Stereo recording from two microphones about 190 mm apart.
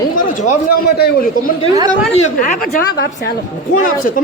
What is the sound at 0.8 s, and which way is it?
Speech, 55° left (ahead or behind).